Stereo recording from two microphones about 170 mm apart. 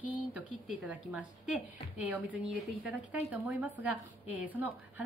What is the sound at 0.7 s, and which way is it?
A woman's voice, 10° right (ahead or behind).